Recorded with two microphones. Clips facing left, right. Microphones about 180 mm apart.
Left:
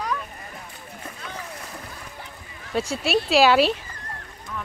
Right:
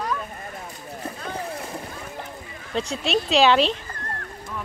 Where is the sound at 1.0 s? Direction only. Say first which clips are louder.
Right 6 dB; 35° right (ahead or behind).